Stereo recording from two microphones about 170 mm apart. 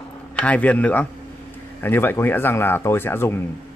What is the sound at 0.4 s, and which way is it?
Speech, 10° left (ahead or behind).